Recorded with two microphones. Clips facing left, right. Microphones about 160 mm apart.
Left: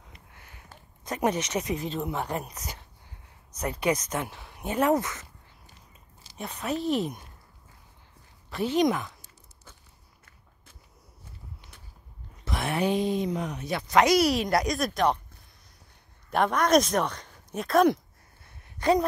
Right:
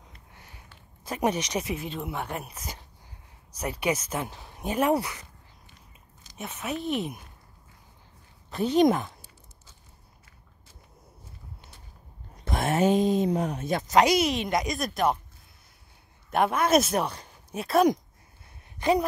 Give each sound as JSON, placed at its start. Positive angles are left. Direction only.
{"t": 1.0, "sound": "speech", "side_deg": -10}
{"t": 2.0, "sound": "speech", "side_deg": 20}
{"t": 3.5, "sound": "speech", "side_deg": -10}
{"t": 4.2, "sound": "speech", "side_deg": -25}
{"t": 6.4, "sound": "speech", "side_deg": 0}
{"t": 8.6, "sound": "speech", "side_deg": -40}
{"t": 12.4, "sound": "a sound", "side_deg": -45}
{"t": 13.6, "sound": "speech", "side_deg": -45}
{"t": 14.3, "sound": "speech", "side_deg": 0}
{"t": 16.3, "sound": "speech", "side_deg": -5}